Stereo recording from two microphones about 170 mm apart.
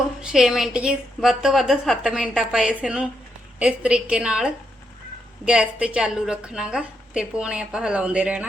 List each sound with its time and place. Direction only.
0.2 s a woman's voice: 5° right (ahead or behind)